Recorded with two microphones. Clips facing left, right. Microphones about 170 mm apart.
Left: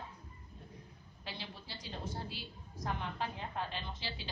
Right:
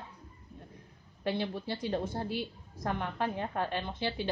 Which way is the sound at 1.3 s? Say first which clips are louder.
Right 14 dB; 55° right (ahead or behind).